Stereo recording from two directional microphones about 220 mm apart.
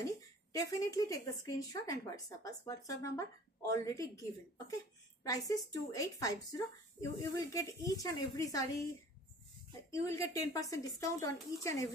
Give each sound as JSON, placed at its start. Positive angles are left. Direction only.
{"t": 0.0, "sound": "speech", "side_deg": 15}
{"t": 5.2, "sound": "speech", "side_deg": 15}
{"t": 9.8, "sound": "speech", "side_deg": 15}